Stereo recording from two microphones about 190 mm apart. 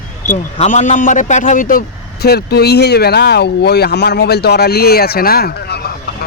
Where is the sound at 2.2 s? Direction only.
55° left (ahead or behind).